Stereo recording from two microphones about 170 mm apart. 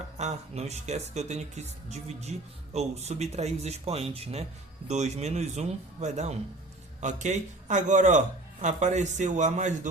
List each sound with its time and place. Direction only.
0.2 s a man's voice: 40° right (ahead or behind)